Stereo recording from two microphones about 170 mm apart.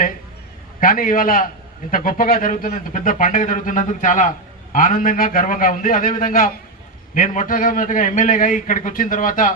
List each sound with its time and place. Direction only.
0.7 s a man's voice: 55° left (ahead or behind)